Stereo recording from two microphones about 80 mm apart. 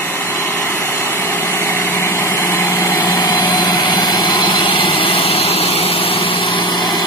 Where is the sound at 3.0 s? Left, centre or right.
Left.